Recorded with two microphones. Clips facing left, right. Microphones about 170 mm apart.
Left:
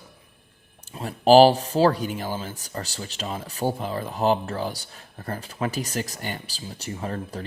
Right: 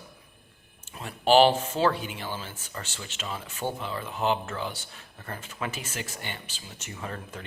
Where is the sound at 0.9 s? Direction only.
35° left (ahead or behind).